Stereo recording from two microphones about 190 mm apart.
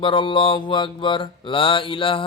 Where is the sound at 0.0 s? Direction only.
25° left (ahead or behind).